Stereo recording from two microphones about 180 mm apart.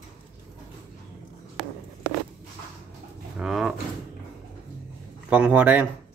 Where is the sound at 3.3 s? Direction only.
5° right (ahead or behind).